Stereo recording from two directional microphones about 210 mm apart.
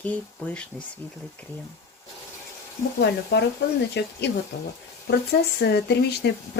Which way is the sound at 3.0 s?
55° left (ahead or behind).